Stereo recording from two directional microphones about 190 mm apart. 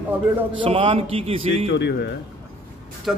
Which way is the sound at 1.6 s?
65° left (ahead or behind).